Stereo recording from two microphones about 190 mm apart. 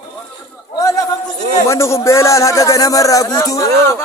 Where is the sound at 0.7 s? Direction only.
20° left (ahead or behind).